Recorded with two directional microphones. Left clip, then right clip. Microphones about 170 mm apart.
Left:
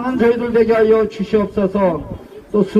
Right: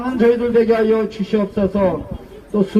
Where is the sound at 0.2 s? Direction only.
15° right (ahead or behind).